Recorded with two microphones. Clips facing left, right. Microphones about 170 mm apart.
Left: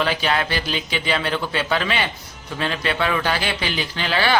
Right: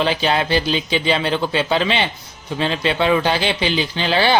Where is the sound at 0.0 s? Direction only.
25° right (ahead or behind).